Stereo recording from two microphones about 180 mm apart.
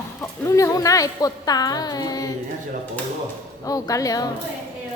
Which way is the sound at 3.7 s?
20° left (ahead or behind).